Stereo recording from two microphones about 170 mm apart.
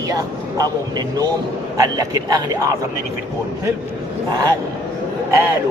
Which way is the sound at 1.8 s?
20° right (ahead or behind).